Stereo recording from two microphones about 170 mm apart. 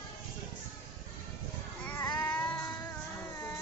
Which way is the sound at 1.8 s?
20° left (ahead or behind).